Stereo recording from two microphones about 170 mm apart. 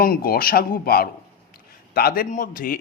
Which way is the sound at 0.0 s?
60° left (ahead or behind).